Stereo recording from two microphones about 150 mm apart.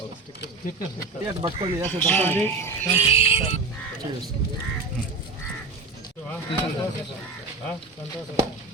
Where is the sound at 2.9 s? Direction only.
40° left (ahead or behind).